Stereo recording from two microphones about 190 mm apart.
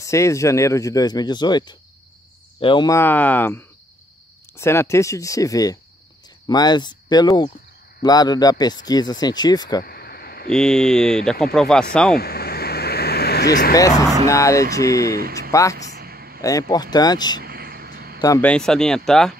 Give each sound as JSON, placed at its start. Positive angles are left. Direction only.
{"t": 0.0, "sound": "speech", "side_deg": 15}
{"t": 3.0, "sound": "speech", "side_deg": 10}
{"t": 9.8, "sound": "a sound", "side_deg": 55}
{"t": 10.5, "sound": "speech", "side_deg": 5}
{"t": 12.2, "sound": "vehicle", "side_deg": 55}
{"t": 13.7, "sound": "speech", "side_deg": 20}
{"t": 15.9, "sound": "a sound", "side_deg": -55}
{"t": 16.3, "sound": "speech", "side_deg": 20}
{"t": 17.4, "sound": "a sound", "side_deg": -55}
{"t": 18.4, "sound": "speech", "side_deg": 5}